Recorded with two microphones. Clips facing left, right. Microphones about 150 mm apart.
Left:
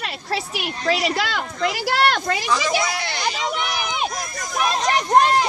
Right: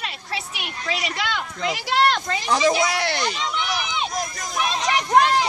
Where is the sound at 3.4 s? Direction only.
55° left (ahead or behind).